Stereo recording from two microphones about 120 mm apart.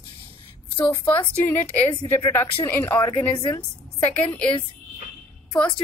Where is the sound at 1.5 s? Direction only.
15° left (ahead or behind).